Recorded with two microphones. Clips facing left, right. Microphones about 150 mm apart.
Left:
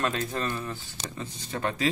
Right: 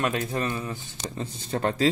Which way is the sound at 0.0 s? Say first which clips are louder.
Right 2 dB; 15° right (ahead or behind).